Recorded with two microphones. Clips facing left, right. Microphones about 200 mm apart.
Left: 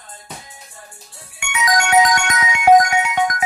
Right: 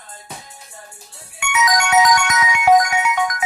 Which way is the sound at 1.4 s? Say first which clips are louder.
Right 1 dB; 25° left (ahead or behind).